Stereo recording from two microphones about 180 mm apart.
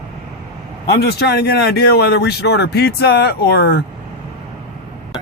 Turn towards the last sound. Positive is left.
turn(degrees=65)  # may be behind; listen again after turning